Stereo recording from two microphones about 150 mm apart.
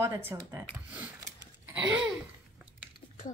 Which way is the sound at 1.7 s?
5° right (ahead or behind).